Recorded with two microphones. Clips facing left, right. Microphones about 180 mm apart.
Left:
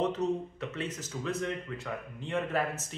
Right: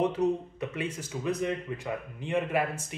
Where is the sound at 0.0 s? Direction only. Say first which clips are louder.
Right 3 dB; 10° right (ahead or behind).